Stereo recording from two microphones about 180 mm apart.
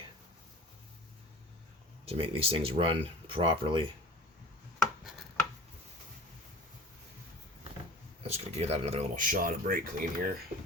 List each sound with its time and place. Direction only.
2.0 s speech: 30° right (ahead or behind)
8.3 s speech: 35° right (ahead or behind); by 10.3 s 50° right (ahead or behind)